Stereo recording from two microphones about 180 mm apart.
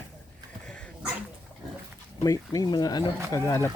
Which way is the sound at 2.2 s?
20° left (ahead or behind).